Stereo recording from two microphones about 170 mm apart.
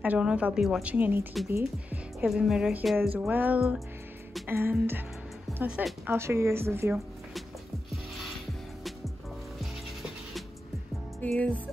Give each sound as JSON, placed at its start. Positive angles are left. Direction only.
{"t": 0.0, "sound": "a woman's voice", "side_deg": -5}
{"t": 2.2, "sound": "a woman's voice", "side_deg": 0}
{"t": 11.1, "sound": "music", "side_deg": 5}